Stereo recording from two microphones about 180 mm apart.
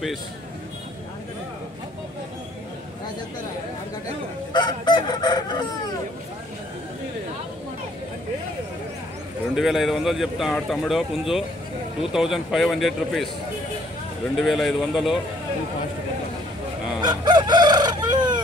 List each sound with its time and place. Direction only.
4.5 s fowl: 25° left (ahead or behind)
9.6 s a man's voice: centre (ahead or behind)
14.3 s a man's voice: centre (ahead or behind)
17.0 s chicken: 25° right (ahead or behind)